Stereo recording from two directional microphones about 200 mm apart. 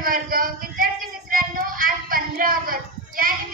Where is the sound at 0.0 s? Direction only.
45° right (ahead or behind).